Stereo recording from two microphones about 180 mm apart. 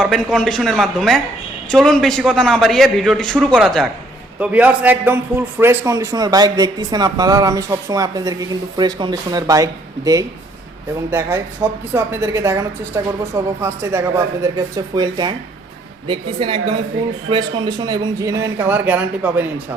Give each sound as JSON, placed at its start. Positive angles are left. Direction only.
{"t": 0.0, "sound": "a man's voice", "side_deg": 5}